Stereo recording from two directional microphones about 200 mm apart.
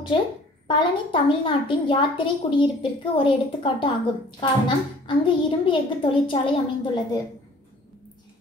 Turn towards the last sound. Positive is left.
turn(degrees=25)  # may be behind; listen again after turning